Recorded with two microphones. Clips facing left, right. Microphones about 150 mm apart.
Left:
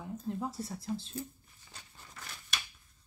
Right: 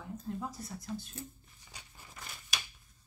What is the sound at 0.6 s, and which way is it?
Speech, 30° left (ahead or behind).